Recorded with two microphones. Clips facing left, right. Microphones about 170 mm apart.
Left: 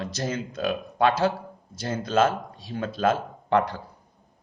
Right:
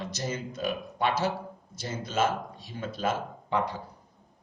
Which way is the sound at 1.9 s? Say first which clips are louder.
Left 6 dB; 75° left (ahead or behind).